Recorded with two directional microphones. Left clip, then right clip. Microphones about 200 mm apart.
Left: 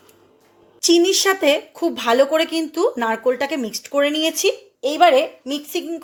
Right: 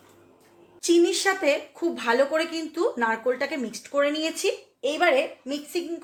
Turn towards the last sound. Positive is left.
turn(degrees=45)  # may be behind; listen again after turning